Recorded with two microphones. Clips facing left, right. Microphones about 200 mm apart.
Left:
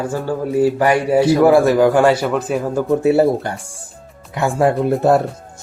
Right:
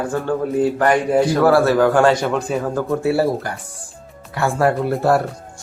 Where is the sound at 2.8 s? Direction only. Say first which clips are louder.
Left 6 dB; 20° left (ahead or behind).